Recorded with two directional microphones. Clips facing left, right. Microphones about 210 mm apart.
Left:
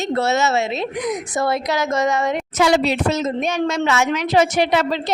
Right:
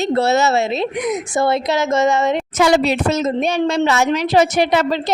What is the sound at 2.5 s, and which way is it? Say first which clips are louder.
A woman's voice: right 1 dB; 50° right (ahead or behind).